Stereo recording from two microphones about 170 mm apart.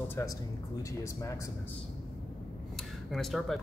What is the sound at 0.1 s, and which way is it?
Speech, 20° left (ahead or behind).